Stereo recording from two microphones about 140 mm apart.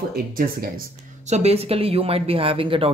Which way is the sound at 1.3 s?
50° right (ahead or behind).